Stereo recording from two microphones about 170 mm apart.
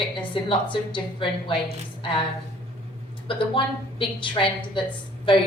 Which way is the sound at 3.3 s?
30° left (ahead or behind).